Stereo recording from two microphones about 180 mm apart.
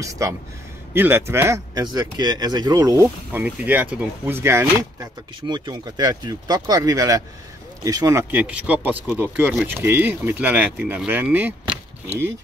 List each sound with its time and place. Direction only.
0.0 s speech: 15° right (ahead or behind)
3.3 s speech: 10° right (ahead or behind)